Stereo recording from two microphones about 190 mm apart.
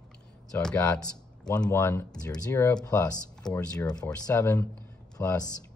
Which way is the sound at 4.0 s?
15° left (ahead or behind).